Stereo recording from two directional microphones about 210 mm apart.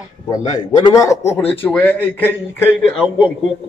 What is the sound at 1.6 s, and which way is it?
Speech, 10° left (ahead or behind).